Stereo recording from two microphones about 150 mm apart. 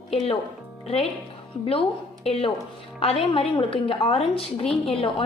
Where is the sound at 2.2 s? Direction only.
40° left (ahead or behind).